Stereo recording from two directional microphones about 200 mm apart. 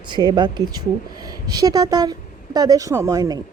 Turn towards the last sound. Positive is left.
turn(degrees=-20)  # may be behind; listen again after turning